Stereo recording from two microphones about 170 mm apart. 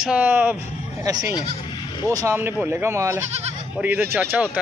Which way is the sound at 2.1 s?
20° right (ahead or behind).